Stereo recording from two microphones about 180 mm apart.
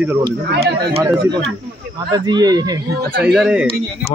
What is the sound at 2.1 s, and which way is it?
Speech, 25° right (ahead or behind).